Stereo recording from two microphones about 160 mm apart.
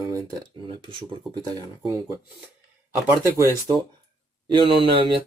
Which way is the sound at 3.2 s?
15° right (ahead or behind).